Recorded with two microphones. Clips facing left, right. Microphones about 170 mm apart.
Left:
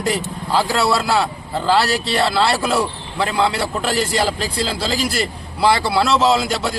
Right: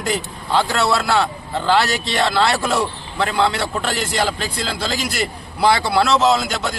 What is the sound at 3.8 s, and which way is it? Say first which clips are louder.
A man's voice: left 4 dB; 35° left (ahead or behind).